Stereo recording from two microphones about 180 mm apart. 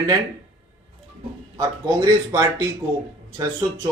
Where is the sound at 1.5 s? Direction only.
20° right (ahead or behind).